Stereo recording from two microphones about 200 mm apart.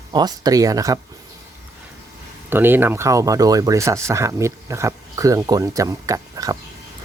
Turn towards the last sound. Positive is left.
turn(degrees=-15)  # may be behind; listen again after turning